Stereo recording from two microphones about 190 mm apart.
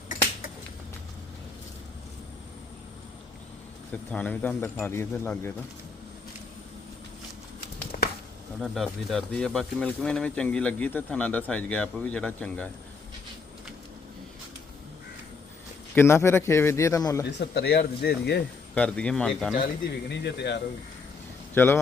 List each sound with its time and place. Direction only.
3.9 s speech: 10° left (ahead or behind)
7.9 s a sound: 50° left (ahead or behind)
8.6 s speech: centre (ahead or behind)
16.0 s speech: 15° left (ahead or behind)
17.2 s speech: 60° left (ahead or behind)
18.7 s speech: 5° left (ahead or behind)
20.1 s speech: 65° left (ahead or behind)
21.5 s speech: 10° left (ahead or behind)